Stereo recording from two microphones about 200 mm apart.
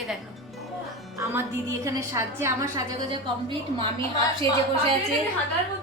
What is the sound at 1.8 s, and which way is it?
A woman's voice, 15° right (ahead or behind).